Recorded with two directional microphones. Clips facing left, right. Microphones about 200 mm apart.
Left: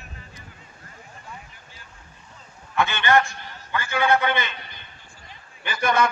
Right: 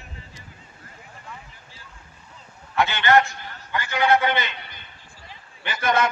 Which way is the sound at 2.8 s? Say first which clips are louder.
Right 1 dB; 20° right (ahead or behind).